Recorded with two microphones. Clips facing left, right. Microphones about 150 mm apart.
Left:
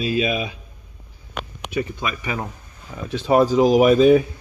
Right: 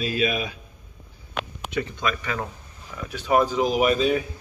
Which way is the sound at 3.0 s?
30° left (ahead or behind).